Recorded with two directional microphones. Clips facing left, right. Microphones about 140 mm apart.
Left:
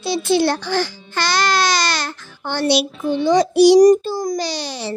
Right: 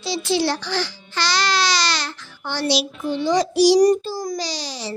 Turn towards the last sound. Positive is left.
turn(degrees=60)  # may be behind; listen again after turning